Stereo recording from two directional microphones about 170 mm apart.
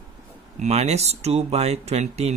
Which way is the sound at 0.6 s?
40° right (ahead or behind).